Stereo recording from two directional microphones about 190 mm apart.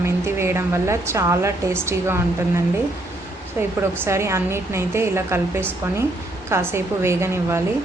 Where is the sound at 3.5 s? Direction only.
15° right (ahead or behind).